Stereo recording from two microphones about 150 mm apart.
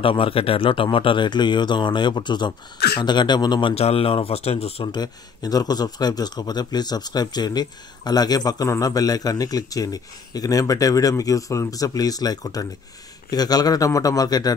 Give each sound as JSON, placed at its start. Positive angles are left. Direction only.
{"t": 0.0, "sound": "a man's voice", "side_deg": 35}
{"t": 3.7, "sound": "speech", "side_deg": 40}
{"t": 4.9, "sound": "a man's voice", "side_deg": 25}